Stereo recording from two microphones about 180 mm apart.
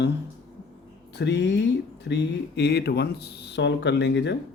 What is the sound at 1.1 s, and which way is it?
Speech, 75° left (ahead or behind).